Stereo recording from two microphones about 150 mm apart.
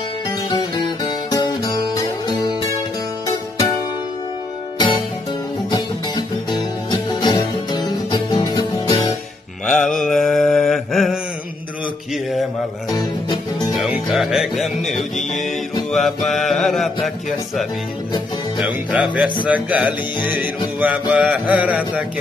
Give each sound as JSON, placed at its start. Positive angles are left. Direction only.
{"t": 0.5, "sound": "music", "side_deg": 30}
{"t": 4.7, "sound": "music", "side_deg": 30}
{"t": 10.0, "sound": "mantra", "side_deg": 0}
{"t": 12.9, "sound": "music", "side_deg": 25}
{"t": 13.7, "sound": "music", "side_deg": 0}
{"t": 15.9, "sound": "mantra", "side_deg": 0}
{"t": 18.6, "sound": "music", "side_deg": -10}